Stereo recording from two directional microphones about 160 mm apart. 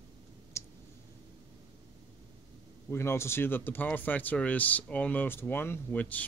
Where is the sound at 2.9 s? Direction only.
15° left (ahead or behind).